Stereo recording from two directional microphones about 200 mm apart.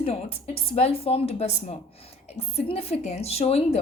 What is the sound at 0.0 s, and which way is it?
A woman's voice, 30° left (ahead or behind).